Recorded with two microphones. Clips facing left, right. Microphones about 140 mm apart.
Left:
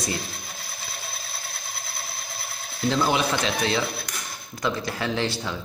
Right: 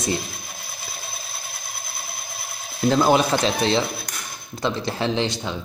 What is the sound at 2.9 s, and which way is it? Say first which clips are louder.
Speech: right 5 dB; 40° right (ahead or behind).